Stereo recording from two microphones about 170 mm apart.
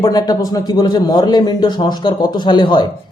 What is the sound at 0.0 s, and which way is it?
Speech, 20° left (ahead or behind).